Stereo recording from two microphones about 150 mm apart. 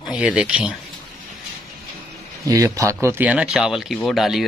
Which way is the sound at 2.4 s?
20° right (ahead or behind).